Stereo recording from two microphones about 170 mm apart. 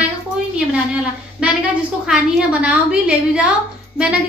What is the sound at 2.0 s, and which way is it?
A woman's voice, 5° right (ahead or behind).